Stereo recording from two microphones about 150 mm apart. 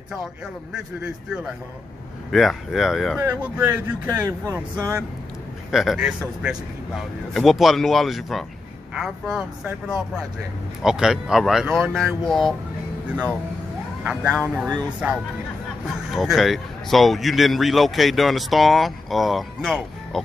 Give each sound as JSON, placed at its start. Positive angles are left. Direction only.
{"t": 0.7, "sound": "a man's voice", "side_deg": -5}
{"t": 3.2, "sound": "speech", "side_deg": -15}
{"t": 5.7, "sound": "a man's voice", "side_deg": 0}
{"t": 10.8, "sound": "a man's voice", "side_deg": -5}
{"t": 14.0, "sound": "a man's voice", "side_deg": -10}
{"t": 16.1, "sound": "a man's voice", "side_deg": 0}